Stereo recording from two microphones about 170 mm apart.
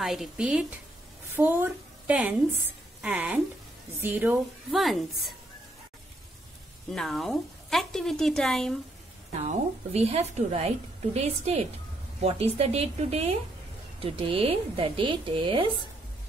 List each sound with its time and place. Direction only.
0.0 s a woman's voice: centre (ahead or behind)
4.6 s speech: centre (ahead or behind)
6.9 s speech: centre (ahead or behind)
9.4 s a woman's voice: 40° right (ahead or behind)